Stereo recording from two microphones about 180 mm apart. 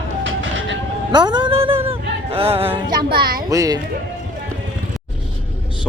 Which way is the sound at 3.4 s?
20° right (ahead or behind).